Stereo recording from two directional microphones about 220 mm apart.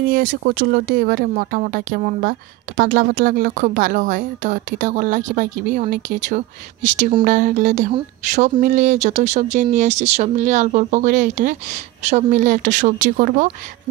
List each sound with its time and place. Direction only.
0.1 s a woman's voice: 40° right (ahead or behind)